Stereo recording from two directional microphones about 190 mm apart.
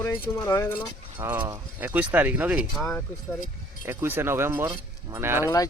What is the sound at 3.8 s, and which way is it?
Speech, 10° right (ahead or behind).